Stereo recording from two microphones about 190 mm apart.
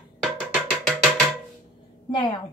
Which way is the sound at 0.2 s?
Centre (ahead or behind).